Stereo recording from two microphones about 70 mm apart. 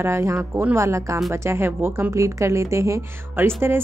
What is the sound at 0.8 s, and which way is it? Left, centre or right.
A woman's voice, right.